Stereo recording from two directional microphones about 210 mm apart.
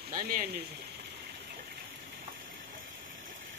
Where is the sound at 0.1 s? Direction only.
40° right (ahead or behind).